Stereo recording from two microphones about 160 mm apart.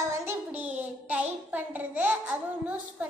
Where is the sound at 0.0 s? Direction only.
15° right (ahead or behind).